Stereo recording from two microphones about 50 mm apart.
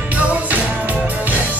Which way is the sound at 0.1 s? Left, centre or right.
Right.